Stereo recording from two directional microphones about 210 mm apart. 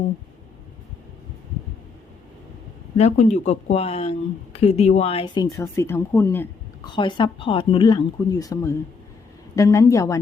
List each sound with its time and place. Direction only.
3.0 s speech: 35° left (ahead or behind); by 6.5 s 10° left (ahead or behind)
6.8 s a woman's voice: 20° left (ahead or behind)